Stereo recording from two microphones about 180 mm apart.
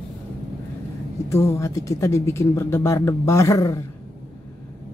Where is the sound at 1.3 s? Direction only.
15° left (ahead or behind).